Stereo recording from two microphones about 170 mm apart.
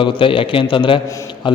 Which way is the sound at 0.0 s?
30° left (ahead or behind).